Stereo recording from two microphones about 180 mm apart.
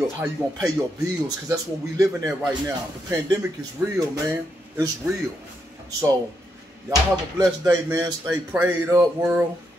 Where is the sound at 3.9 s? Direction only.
15° right (ahead or behind).